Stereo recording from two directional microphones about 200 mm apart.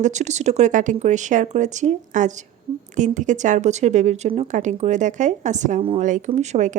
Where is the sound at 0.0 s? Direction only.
35° right (ahead or behind).